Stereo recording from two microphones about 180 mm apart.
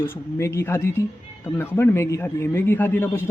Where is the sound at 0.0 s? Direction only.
15° left (ahead or behind).